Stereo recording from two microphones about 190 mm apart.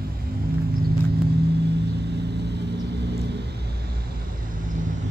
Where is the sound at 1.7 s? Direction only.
60° right (ahead or behind).